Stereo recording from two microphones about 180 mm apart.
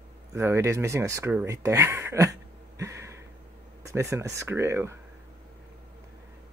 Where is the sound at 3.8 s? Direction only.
15° right (ahead or behind).